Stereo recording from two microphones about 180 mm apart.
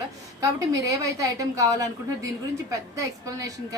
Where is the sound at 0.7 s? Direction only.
20° right (ahead or behind).